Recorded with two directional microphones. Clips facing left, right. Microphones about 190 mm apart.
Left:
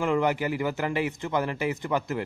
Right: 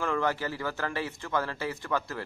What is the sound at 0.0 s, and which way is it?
Speech, 15° left (ahead or behind).